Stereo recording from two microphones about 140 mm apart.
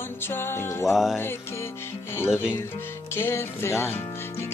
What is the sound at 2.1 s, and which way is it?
Music, 15° left (ahead or behind).